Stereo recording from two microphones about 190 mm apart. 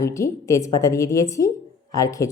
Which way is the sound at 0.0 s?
15° left (ahead or behind).